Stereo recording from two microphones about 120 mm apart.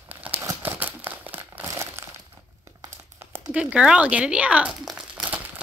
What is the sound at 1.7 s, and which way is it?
Crumpling, 25° right (ahead or behind).